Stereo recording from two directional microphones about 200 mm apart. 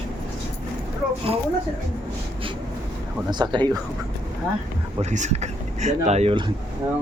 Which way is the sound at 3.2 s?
20° right (ahead or behind).